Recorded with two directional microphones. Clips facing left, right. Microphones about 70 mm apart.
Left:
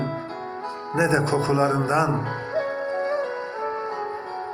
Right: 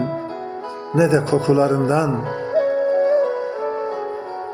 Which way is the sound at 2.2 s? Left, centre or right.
Left.